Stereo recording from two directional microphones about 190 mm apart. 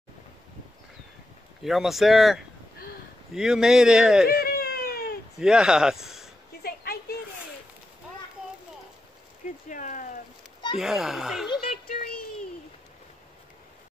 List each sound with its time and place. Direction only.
1.6 s speech: centre (ahead or behind)
4.3 s baby cry: 55° left (ahead or behind)
5.4 s speech: 5° right (ahead or behind)
6.6 s a sound: 55° left (ahead or behind)
9.7 s a sound: 40° left (ahead or behind)
10.8 s speech: centre (ahead or behind)
11.6 s child singing: 50° left (ahead or behind)